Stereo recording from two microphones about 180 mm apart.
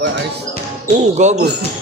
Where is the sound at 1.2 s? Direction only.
40° right (ahead or behind).